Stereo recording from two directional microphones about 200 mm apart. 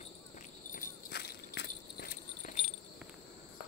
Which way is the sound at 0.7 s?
45° left (ahead or behind).